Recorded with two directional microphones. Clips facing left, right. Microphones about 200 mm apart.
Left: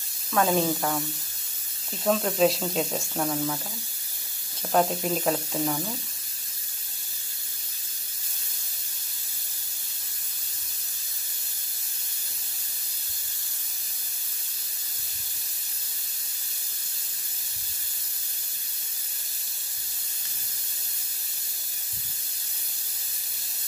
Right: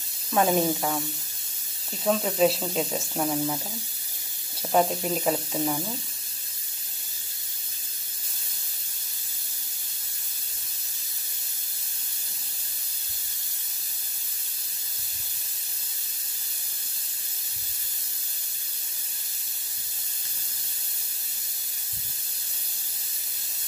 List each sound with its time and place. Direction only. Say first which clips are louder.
0.3 s speech: right 1 dB; 20° right (ahead or behind)
0.7 s speech: even; 5° right (ahead or behind)
2.0 s speech: even; 5° right (ahead or behind)
3.3 s speech: right 2 dB; 15° right (ahead or behind)
4.7 s speech: even; centre (ahead or behind)